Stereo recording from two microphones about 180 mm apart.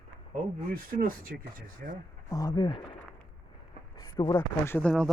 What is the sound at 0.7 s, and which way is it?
Speech, 50° right (ahead or behind).